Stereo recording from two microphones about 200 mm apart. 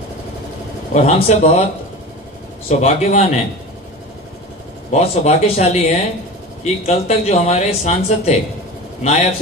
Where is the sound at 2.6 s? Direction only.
35° left (ahead or behind).